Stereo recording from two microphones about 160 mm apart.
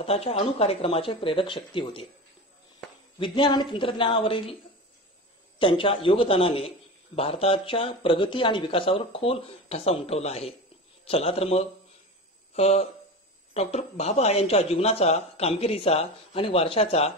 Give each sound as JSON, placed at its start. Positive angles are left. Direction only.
{"t": 0.0, "sound": "speech", "side_deg": 40}
{"t": 3.2, "sound": "a woman's voice", "side_deg": 30}
{"t": 5.6, "sound": "speech", "side_deg": 35}